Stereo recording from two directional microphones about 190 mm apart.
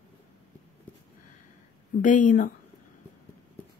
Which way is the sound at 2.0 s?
45° left (ahead or behind).